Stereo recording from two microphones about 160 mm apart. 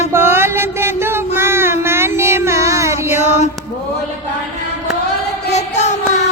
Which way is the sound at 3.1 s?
45° left (ahead or behind).